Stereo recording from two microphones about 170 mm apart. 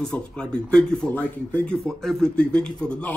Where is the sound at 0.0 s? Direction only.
5° left (ahead or behind).